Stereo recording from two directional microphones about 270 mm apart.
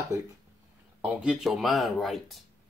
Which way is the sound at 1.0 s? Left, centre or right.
Centre.